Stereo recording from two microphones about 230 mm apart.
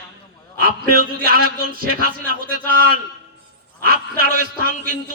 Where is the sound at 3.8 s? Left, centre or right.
Right.